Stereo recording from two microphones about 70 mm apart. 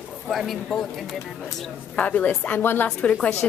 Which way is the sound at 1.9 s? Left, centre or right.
Left.